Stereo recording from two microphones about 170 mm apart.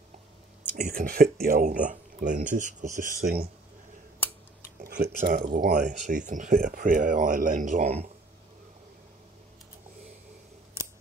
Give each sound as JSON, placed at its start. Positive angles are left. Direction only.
{"t": 0.7, "sound": "speech", "side_deg": -60}
{"t": 4.7, "sound": "speech", "side_deg": -65}